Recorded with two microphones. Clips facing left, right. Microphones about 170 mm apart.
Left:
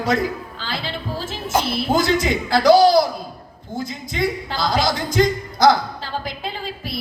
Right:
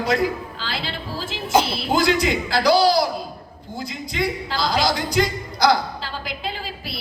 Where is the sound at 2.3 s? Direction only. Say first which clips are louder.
Left 4 dB; 50° left (ahead or behind).